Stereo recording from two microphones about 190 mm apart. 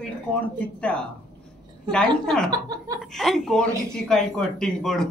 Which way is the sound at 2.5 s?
20° right (ahead or behind).